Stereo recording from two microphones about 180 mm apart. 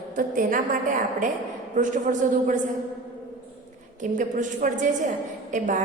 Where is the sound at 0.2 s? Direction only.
50° right (ahead or behind).